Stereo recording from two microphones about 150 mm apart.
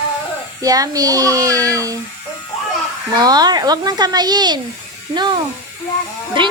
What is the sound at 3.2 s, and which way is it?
Speech, 25° right (ahead or behind).